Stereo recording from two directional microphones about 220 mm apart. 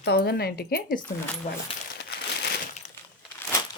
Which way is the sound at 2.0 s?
50° left (ahead or behind).